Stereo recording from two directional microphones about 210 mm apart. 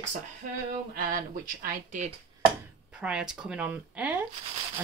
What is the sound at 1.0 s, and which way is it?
Speech, 40° right (ahead or behind).